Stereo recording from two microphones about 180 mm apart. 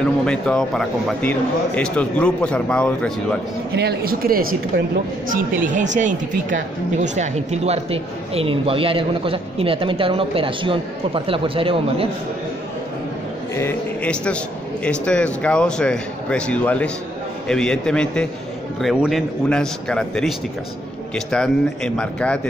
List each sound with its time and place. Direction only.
0.0 s speech: 5° left (ahead or behind)
3.7 s speech: 60° right (ahead or behind); by 12.1 s 30° right (ahead or behind)
13.6 s speech: 10° left (ahead or behind)